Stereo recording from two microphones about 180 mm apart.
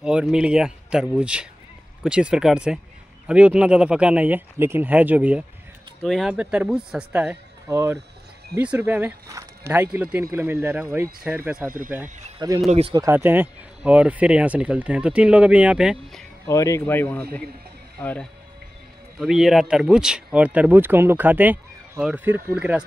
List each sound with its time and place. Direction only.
0.0 s speech: 5° right (ahead or behind)
12.4 s speech: 25° right (ahead or behind)
12.6 s speech: 35° right (ahead or behind)
12.9 s speech: 15° right (ahead or behind)
16.4 s speech: 15° left (ahead or behind); by 22.8 s 10° right (ahead or behind)